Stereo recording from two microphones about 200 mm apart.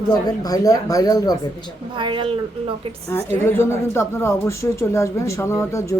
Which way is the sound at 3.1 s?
10° left (ahead or behind).